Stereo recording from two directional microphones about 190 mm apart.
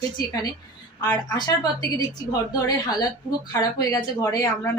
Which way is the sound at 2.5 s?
20° left (ahead or behind).